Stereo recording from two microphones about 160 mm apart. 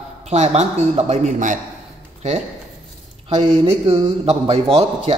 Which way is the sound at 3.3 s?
45° right (ahead or behind).